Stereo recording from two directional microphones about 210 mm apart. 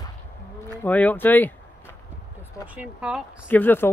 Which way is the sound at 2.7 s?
5° right (ahead or behind).